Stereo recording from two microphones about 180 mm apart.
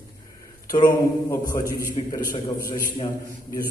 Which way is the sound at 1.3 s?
20° left (ahead or behind).